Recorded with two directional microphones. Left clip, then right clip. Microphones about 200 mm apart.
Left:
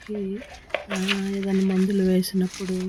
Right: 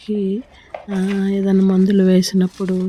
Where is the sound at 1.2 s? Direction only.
20° right (ahead or behind).